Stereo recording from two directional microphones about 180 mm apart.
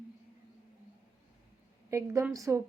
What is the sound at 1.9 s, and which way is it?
Speech, 15° right (ahead or behind).